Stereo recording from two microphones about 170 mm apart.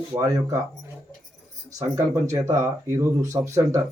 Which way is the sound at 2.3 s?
15° right (ahead or behind).